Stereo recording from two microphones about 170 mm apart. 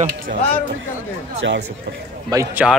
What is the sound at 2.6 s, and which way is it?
Speech, centre (ahead or behind).